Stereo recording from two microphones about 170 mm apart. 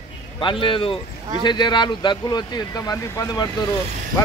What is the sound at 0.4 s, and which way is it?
A man's voice, 30° left (ahead or behind).